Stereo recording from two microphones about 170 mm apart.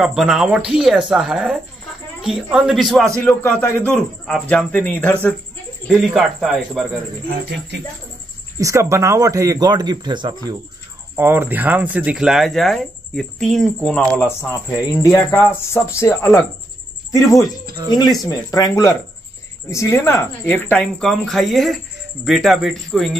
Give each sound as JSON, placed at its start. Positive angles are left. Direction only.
{"t": 0.0, "sound": "a man's voice", "side_deg": -5}
{"t": 8.5, "sound": "speech", "side_deg": -20}
{"t": 11.1, "sound": "a man's voice", "side_deg": -15}